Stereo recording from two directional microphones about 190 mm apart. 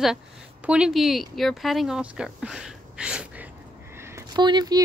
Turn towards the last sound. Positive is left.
turn(degrees=-20)  # may be behind; listen again after turning